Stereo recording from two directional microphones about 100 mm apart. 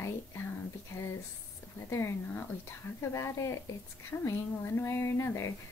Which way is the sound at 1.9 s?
25° left (ahead or behind).